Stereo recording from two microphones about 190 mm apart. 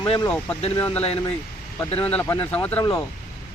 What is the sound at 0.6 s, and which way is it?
Speech, 25° left (ahead or behind).